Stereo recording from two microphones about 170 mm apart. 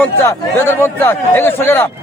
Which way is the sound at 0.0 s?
15° left (ahead or behind).